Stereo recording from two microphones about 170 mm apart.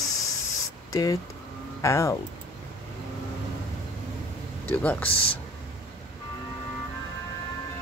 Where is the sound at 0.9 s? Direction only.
20° left (ahead or behind).